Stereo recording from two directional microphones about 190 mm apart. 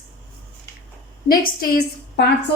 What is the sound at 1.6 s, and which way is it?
Speech, 55° left (ahead or behind).